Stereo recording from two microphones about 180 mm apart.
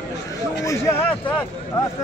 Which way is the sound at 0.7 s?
15° left (ahead or behind).